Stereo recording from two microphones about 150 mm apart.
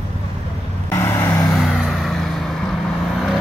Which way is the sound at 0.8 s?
15° left (ahead or behind).